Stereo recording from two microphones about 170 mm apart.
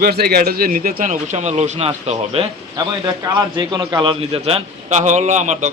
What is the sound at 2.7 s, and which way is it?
A man's voice, 20° right (ahead or behind).